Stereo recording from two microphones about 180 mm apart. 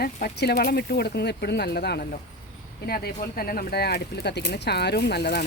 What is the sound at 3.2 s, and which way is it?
Speech, 55° left (ahead or behind).